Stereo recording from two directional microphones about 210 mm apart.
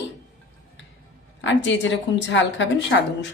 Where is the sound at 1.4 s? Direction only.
60° left (ahead or behind).